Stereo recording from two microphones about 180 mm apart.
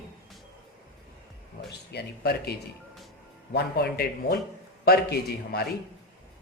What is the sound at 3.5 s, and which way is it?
A man's voice, 60° left (ahead or behind).